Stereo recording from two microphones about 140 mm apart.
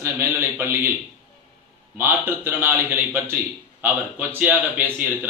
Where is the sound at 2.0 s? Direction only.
15° right (ahead or behind).